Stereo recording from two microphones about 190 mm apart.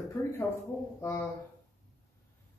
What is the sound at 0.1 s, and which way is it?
Speech, 10° left (ahead or behind).